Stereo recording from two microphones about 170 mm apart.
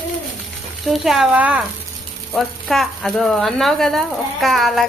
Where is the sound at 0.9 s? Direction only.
Centre (ahead or behind).